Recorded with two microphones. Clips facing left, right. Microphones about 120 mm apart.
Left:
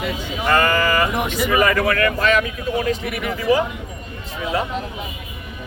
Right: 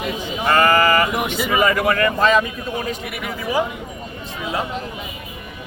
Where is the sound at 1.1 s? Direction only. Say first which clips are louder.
Left 1 dB; 10° right (ahead or behind).